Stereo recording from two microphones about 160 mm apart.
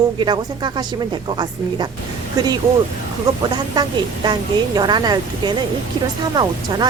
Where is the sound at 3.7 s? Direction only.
25° right (ahead or behind).